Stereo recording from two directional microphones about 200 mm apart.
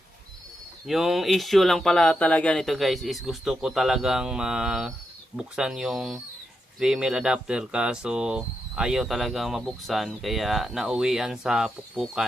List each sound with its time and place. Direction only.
0.9 s speech: centre (ahead or behind)